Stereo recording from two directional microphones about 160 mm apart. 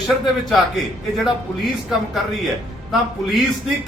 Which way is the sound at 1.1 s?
Centre (ahead or behind).